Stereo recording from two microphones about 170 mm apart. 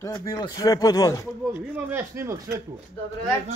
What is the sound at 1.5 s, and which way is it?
Speech, 15° right (ahead or behind).